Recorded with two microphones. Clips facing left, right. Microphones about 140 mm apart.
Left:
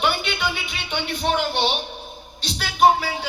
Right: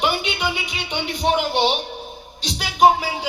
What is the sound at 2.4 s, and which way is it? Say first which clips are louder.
Music: right 2 dB; 15° right (ahead or behind).